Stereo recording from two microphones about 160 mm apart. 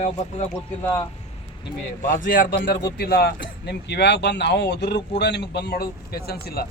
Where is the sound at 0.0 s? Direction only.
45° left (ahead or behind).